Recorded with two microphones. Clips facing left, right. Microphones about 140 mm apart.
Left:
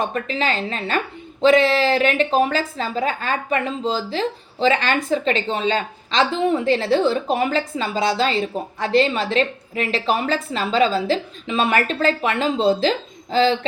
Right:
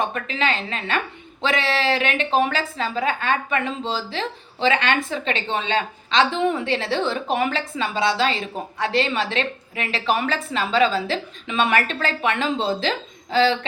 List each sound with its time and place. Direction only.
0.0 s a woman's voice: 35° left (ahead or behind)